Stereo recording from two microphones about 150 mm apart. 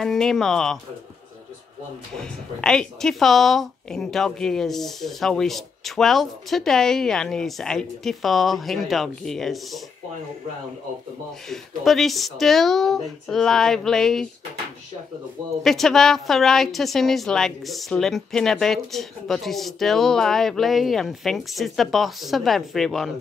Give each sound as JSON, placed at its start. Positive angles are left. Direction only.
{"t": 0.0, "sound": "a woman's voice", "side_deg": 5}
{"t": 2.1, "sound": "a woman's voice", "side_deg": 5}
{"t": 11.4, "sound": "a woman's voice", "side_deg": 0}
{"t": 15.6, "sound": "a woman's voice", "side_deg": 0}